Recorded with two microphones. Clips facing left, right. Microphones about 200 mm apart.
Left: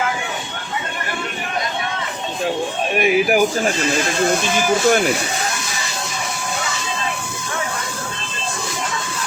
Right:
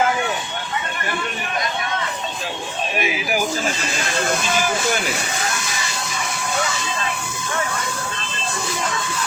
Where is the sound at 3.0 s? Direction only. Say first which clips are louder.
Left 9 dB; 50° left (ahead or behind).